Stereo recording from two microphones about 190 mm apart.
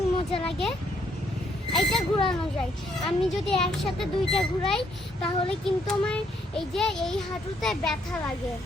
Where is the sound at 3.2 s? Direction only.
Centre (ahead or behind).